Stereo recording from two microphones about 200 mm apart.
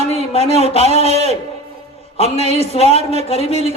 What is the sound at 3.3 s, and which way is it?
Speech, 30° left (ahead or behind).